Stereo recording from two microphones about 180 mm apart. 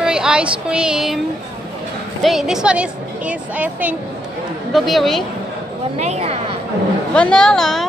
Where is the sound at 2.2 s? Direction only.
Centre (ahead or behind).